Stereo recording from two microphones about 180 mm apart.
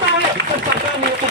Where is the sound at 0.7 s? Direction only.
70° right (ahead or behind).